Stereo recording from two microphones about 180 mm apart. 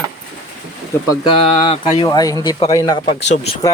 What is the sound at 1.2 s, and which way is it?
Speech, 25° left (ahead or behind).